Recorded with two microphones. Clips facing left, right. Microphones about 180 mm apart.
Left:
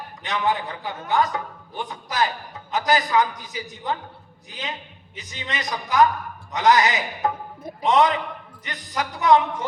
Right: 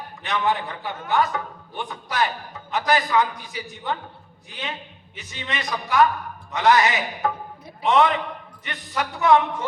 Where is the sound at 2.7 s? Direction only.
20° left (ahead or behind).